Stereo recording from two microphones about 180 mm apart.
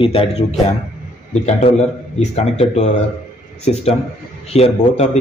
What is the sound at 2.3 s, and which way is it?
Speech, 35° left (ahead or behind).